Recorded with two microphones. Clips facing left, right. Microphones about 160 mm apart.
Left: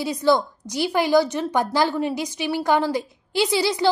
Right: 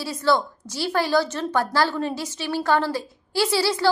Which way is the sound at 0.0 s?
15° left (ahead or behind).